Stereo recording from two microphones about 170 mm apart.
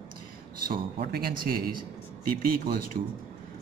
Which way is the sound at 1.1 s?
60° right (ahead or behind).